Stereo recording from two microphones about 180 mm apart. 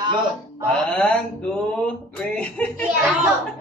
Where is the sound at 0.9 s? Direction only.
5° left (ahead or behind).